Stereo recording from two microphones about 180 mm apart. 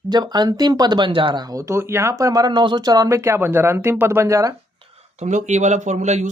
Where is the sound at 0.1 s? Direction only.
25° right (ahead or behind).